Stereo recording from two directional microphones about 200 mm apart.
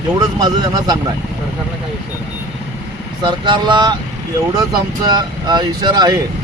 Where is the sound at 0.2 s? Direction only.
20° right (ahead or behind).